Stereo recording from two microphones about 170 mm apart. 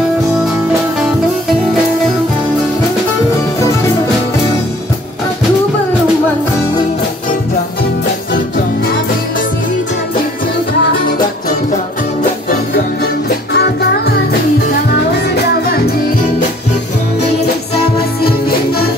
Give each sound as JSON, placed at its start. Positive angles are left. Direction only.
{"t": 13.5, "sound": "music", "side_deg": 75}
{"t": 15.1, "sound": "music", "side_deg": 70}